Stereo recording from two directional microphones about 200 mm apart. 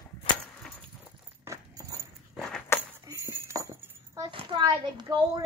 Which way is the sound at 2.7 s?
15° left (ahead or behind).